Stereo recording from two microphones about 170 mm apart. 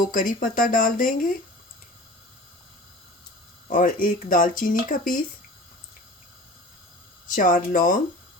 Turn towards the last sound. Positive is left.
turn(degrees=50)  # may be behind; listen again after turning